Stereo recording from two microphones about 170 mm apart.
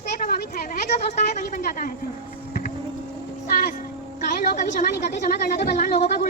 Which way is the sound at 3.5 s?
50° left (ahead or behind).